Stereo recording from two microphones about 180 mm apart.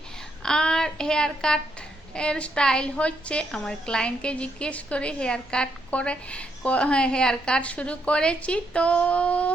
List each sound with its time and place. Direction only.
0.4 s a child's voice: 5° left (ahead or behind)